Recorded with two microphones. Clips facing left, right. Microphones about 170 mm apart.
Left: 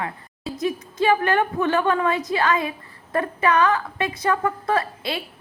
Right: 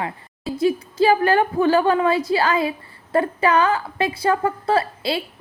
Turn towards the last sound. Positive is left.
turn(degrees=-30)  # may be behind; listen again after turning